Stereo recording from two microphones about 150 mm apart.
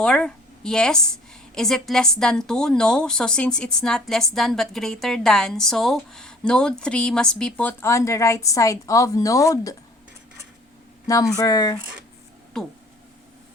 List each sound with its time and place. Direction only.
0.0 s a woman's voice: 5° left (ahead or behind); by 9.7 s 20° left (ahead or behind)
11.0 s speech: 20° left (ahead or behind)
12.5 s a woman's voice: 5° left (ahead or behind)